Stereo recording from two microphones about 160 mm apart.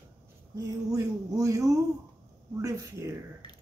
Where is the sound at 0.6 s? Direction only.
20° right (ahead or behind).